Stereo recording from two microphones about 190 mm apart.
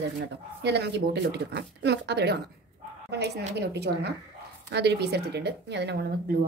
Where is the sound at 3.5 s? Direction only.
60° right (ahead or behind).